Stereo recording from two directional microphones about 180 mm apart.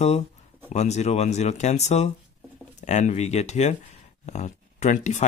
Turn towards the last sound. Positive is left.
turn(degrees=40)  # may be behind; listen again after turning